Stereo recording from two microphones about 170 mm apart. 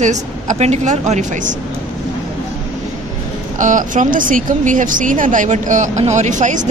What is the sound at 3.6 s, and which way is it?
Speech, 50° right (ahead or behind).